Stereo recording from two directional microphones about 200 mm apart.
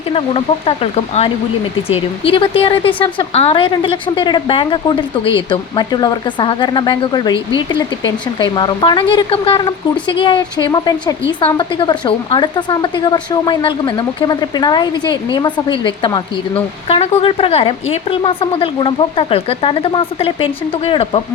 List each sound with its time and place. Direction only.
0.1 s a woman's voice: 30° left (ahead or behind)